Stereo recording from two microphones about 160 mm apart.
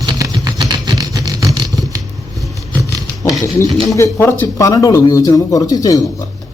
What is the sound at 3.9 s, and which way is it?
Speech, 15° left (ahead or behind).